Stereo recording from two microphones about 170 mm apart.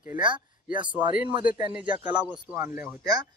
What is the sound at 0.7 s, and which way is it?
Speech, 10° right (ahead or behind).